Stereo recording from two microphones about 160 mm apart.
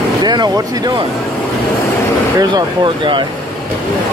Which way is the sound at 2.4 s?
30° right (ahead or behind).